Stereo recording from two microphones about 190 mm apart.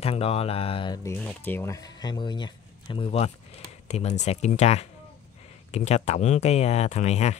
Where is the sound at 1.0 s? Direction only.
10° left (ahead or behind).